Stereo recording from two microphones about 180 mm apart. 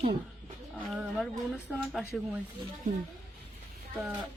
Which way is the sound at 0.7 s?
Centre (ahead or behind).